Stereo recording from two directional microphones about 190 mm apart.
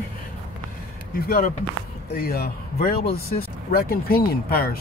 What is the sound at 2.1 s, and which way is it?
Speech, 55° left (ahead or behind).